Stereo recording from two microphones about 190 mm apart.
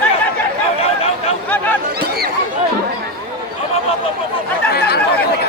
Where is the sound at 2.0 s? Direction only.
55° right (ahead or behind).